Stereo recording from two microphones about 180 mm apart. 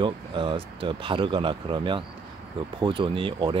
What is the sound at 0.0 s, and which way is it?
Speech, 30° right (ahead or behind).